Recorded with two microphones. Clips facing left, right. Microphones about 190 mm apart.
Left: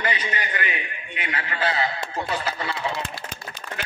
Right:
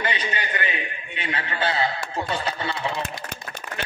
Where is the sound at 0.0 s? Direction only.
30° right (ahead or behind).